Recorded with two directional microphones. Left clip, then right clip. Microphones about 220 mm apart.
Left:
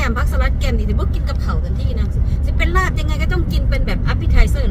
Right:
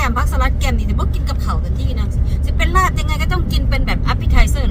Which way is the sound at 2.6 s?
15° right (ahead or behind).